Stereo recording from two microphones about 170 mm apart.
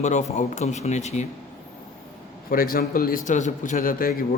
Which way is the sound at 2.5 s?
60° left (ahead or behind).